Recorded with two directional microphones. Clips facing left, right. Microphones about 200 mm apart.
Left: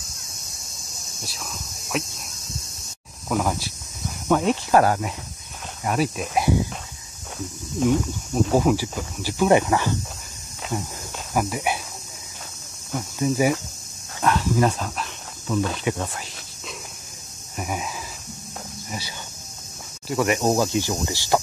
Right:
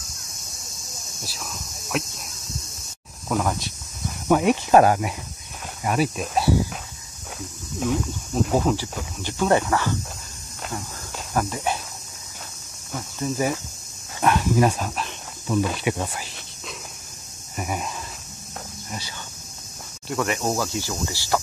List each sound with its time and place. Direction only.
1.2 s speech: centre (ahead or behind)
3.3 s speech: centre (ahead or behind)
4.3 s speech: 10° right (ahead or behind)
5.9 s speech: centre (ahead or behind)
7.3 s speech: 5° left (ahead or behind)
11.3 s speech: 10° left (ahead or behind)
12.9 s speech: 10° left (ahead or behind)
14.2 s speech: 15° right (ahead or behind)
17.6 s a sound: centre (ahead or behind)
18.9 s cricket: 10° left (ahead or behind)
20.1 s speech: 10° left (ahead or behind)
20.3 s speech: 20° left (ahead or behind)